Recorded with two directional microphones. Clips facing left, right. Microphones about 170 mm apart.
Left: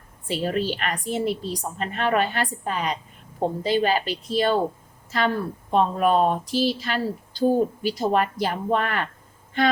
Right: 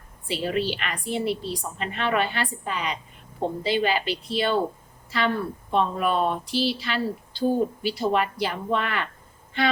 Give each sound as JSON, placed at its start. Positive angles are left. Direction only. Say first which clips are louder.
{"t": 0.3, "sound": "speech", "louder": "left 1 dB", "side_deg": 45}